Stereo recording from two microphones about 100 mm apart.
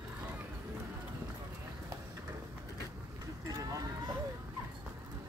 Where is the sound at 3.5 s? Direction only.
35° right (ahead or behind).